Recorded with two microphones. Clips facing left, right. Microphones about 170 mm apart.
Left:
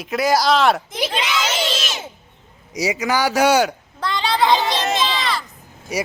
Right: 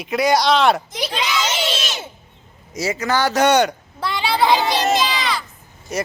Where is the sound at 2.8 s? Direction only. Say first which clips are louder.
Even; 15° left (ahead or behind).